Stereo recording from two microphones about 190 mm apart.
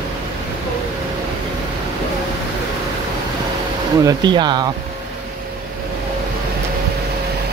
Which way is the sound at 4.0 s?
20° right (ahead or behind).